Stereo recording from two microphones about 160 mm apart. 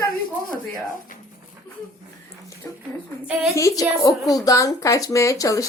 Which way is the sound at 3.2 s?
5° right (ahead or behind).